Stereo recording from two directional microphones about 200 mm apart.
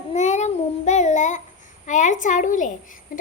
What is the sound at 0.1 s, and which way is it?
Child singing, 35° left (ahead or behind).